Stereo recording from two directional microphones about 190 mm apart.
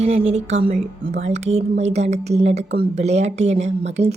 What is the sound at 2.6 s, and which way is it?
Speech, 50° right (ahead or behind).